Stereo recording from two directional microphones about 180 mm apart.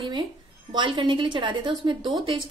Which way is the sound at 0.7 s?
30° right (ahead or behind).